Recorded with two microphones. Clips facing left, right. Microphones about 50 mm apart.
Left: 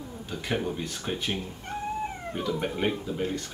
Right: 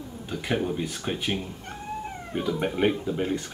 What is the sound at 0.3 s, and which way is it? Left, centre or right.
Speech, centre.